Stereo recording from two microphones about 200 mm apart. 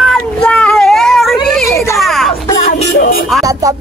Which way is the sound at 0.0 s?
5° left (ahead or behind).